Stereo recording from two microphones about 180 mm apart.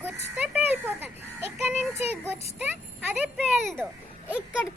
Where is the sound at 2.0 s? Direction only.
10° right (ahead or behind).